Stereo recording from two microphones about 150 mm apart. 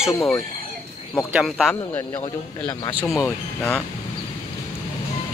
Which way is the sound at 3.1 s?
15° left (ahead or behind).